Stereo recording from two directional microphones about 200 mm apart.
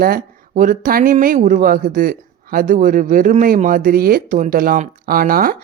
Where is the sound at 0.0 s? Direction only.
45° right (ahead or behind).